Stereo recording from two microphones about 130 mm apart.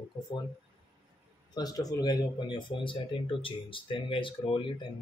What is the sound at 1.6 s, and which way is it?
Speech, 30° left (ahead or behind).